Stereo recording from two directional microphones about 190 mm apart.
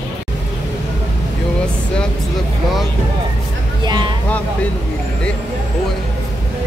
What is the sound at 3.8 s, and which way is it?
Speech, 25° right (ahead or behind).